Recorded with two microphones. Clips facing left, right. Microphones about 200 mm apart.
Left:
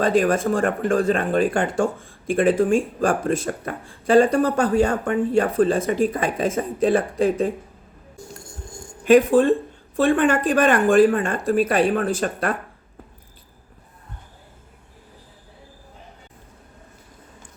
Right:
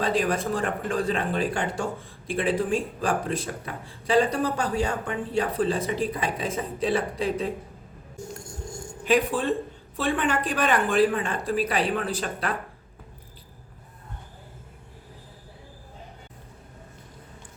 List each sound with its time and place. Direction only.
0.0 s speech: 50° left (ahead or behind)
9.0 s speech: 45° left (ahead or behind)